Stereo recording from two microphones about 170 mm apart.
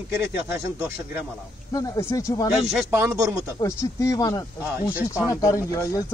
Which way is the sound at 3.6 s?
20° left (ahead or behind).